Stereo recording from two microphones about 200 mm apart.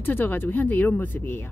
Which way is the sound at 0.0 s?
10° left (ahead or behind).